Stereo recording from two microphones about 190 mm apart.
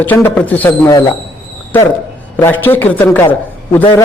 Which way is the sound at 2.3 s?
10° left (ahead or behind).